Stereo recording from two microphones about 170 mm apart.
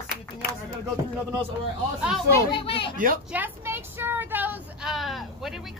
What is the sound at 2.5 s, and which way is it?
Speech, 30° left (ahead or behind).